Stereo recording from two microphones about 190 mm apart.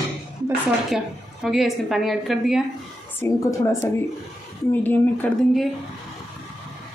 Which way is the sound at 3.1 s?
15° left (ahead or behind).